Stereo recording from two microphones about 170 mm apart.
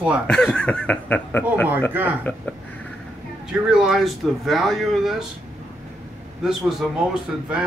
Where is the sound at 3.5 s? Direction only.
5° right (ahead or behind).